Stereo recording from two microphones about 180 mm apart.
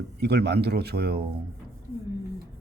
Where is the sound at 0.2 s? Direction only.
65° right (ahead or behind).